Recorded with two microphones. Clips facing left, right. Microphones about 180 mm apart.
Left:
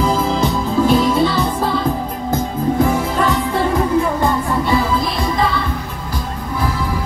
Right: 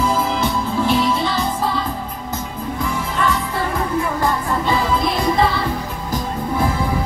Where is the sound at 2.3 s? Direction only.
40° left (ahead or behind).